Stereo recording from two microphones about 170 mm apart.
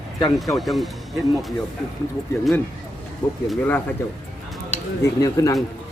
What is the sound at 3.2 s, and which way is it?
Speech, 10° left (ahead or behind).